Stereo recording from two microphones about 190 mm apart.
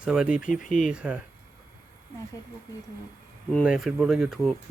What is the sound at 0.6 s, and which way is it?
Speech, 45° left (ahead or behind).